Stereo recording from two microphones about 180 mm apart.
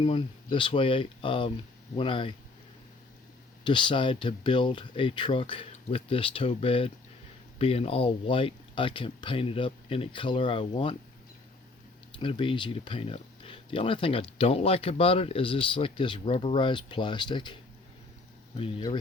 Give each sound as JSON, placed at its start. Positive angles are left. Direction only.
{"t": 0.0, "sound": "speech", "side_deg": 30}
{"t": 3.6, "sound": "speech", "side_deg": 25}
{"t": 12.2, "sound": "speech", "side_deg": 30}